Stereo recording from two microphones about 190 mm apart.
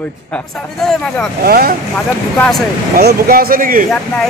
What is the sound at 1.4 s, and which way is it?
Speech, 50° right (ahead or behind).